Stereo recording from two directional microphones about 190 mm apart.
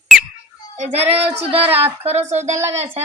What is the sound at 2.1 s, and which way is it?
Speech, 35° right (ahead or behind).